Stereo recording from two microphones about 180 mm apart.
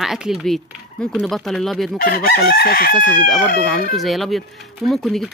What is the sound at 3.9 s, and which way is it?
Speech, centre (ahead or behind).